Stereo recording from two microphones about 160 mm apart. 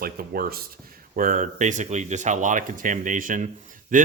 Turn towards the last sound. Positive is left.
turn(degrees=-55)  # may be behind; listen again after turning